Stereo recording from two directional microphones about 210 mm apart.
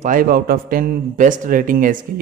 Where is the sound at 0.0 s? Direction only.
40° right (ahead or behind).